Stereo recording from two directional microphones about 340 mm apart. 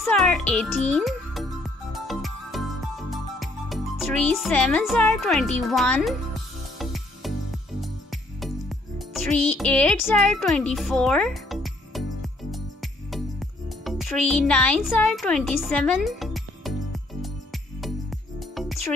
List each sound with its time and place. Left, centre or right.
0.0 s music: centre
10.3 s speech: centre
10.7 s music: centre
13.8 s speech: centre
15.6 s music: centre